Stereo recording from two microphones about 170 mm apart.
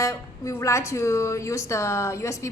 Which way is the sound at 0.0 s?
15° left (ahead or behind).